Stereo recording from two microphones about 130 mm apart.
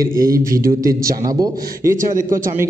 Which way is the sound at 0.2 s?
25° right (ahead or behind).